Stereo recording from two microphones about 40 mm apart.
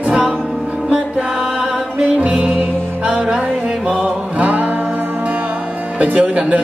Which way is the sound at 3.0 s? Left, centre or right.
Right.